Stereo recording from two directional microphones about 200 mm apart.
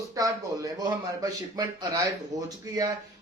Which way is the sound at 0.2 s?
15° right (ahead or behind).